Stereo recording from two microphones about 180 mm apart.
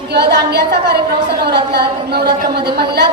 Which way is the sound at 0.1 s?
65° right (ahead or behind).